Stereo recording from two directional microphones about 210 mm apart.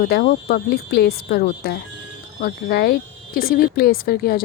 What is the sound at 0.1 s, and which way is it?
Speech, 45° left (ahead or behind).